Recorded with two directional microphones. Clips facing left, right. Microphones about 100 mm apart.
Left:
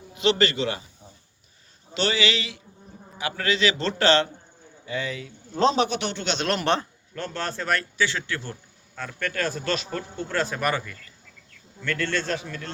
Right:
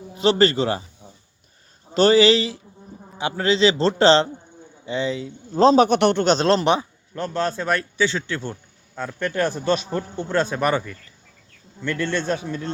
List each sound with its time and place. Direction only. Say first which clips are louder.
0.1 s speech: right 5 dB; 35° right (ahead or behind)
1.9 s a man's voice: right 10 dB; 40° right (ahead or behind)
6.3 s speech: right 8 dB; 30° right (ahead or behind)
6.7 s a man's voice: right 4 dB; 15° right (ahead or behind)